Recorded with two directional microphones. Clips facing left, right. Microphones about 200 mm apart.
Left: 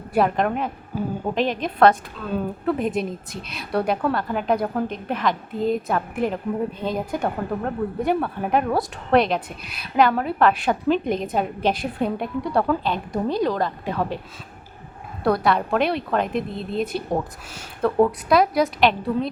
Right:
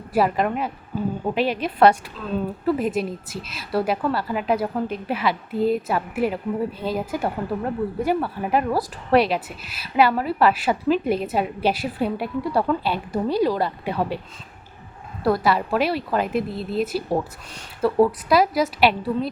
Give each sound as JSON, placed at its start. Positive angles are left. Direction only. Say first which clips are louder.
{"t": 0.1, "sound": "a woman's voice", "louder": "even", "side_deg": -5}
{"t": 15.2, "sound": "a woman's voice", "louder": "even", "side_deg": 0}